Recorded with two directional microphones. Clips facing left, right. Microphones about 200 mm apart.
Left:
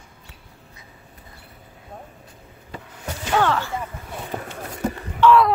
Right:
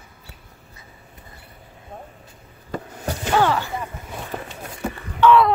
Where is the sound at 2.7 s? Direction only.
45° right (ahead or behind).